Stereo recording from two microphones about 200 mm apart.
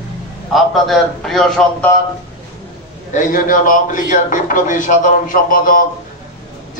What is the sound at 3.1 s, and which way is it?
A man's voice, 40° left (ahead or behind).